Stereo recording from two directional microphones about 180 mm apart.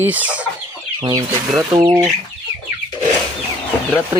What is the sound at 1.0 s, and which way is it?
Chicken, 20° right (ahead or behind).